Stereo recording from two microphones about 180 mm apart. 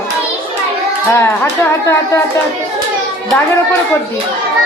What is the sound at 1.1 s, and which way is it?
Speech, 15° left (ahead or behind).